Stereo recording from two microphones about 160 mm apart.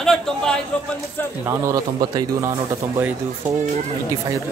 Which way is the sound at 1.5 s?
20° right (ahead or behind).